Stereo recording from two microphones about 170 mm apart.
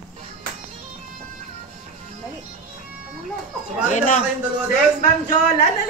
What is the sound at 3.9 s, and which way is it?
Speech, 45° left (ahead or behind).